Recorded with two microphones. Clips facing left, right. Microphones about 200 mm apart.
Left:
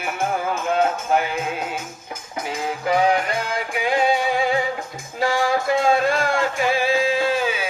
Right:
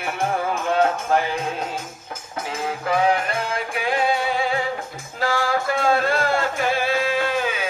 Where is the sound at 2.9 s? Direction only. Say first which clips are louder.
Left 1 dB; 15° left (ahead or behind).